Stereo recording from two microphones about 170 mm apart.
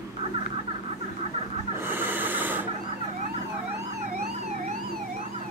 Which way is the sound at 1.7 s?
10° right (ahead or behind).